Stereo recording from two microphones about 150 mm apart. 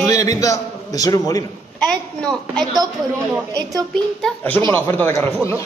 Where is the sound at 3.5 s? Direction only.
25° right (ahead or behind).